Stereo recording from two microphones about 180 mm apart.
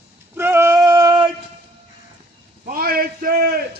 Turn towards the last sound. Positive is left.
turn(degrees=-55)  # may be behind; listen again after turning